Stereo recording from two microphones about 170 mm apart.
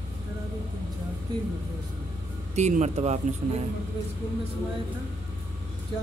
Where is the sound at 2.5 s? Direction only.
45° right (ahead or behind).